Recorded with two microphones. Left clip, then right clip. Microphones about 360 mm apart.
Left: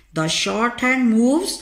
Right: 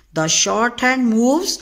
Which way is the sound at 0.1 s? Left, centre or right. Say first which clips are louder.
Right 4 dB; right.